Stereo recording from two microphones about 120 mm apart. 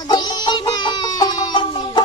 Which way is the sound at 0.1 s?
35° left (ahead or behind).